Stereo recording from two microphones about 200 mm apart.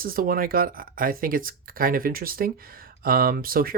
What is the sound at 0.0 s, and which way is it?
Speech, 45° right (ahead or behind).